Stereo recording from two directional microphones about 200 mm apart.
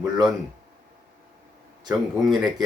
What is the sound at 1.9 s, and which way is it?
Speech, centre (ahead or behind).